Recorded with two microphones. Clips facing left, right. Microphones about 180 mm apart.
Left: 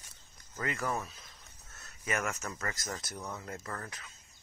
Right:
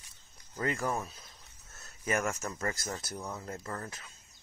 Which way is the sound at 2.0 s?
30° right (ahead or behind).